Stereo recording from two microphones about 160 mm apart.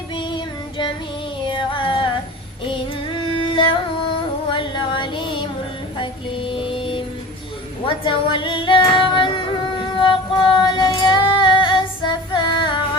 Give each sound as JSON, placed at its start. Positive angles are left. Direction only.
{"t": 0.2, "sound": "music", "side_deg": 30}
{"t": 3.2, "sound": "music", "side_deg": 30}
{"t": 4.4, "sound": "female singing", "side_deg": 30}
{"t": 6.0, "sound": "music", "side_deg": 30}
{"t": 7.9, "sound": "female singing", "side_deg": 30}